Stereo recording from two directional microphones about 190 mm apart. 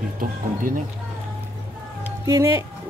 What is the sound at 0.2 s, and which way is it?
Speech, 45° right (ahead or behind).